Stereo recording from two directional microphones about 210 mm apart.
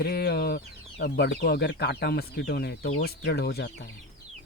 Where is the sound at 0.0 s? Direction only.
50° left (ahead or behind).